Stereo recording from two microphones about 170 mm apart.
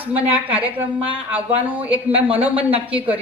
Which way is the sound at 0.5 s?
10° right (ahead or behind).